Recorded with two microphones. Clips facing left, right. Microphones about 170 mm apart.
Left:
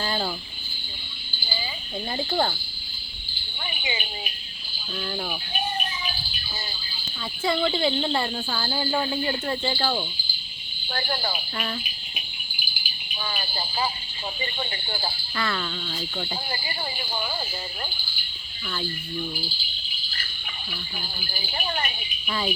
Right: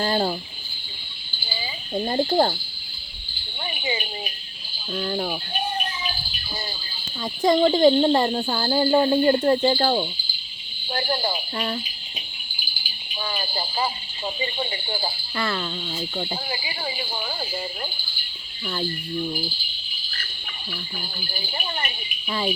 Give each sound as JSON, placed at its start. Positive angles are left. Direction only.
{"t": 0.0, "sound": "speech", "side_deg": -35}
{"t": 2.0, "sound": "speech", "side_deg": -40}
{"t": 3.8, "sound": "speech", "side_deg": -30}
{"t": 7.4, "sound": "speech", "side_deg": -40}
{"t": 10.8, "sound": "speech", "side_deg": -20}
{"t": 13.2, "sound": "speech", "side_deg": -20}
{"t": 14.4, "sound": "speech", "side_deg": -15}
{"t": 15.4, "sound": "speech", "side_deg": -25}
{"t": 16.5, "sound": "speech", "side_deg": -10}
{"t": 22.3, "sound": "speech", "side_deg": -25}